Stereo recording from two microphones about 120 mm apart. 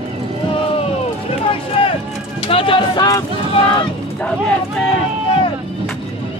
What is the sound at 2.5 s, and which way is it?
Speech, 45° left (ahead or behind).